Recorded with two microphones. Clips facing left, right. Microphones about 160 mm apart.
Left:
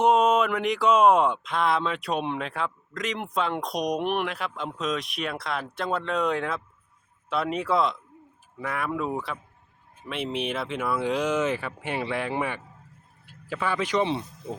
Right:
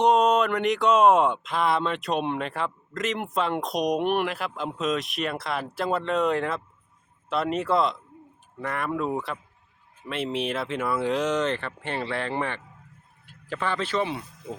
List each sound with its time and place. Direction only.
0.0 s speech: 5° left (ahead or behind); by 14.5 s 25° left (ahead or behind)